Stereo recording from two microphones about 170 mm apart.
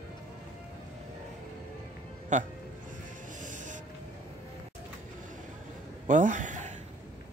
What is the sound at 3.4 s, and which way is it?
Music, 50° right (ahead or behind).